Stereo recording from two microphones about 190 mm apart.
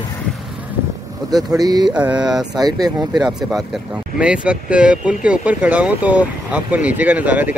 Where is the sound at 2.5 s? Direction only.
20° right (ahead or behind).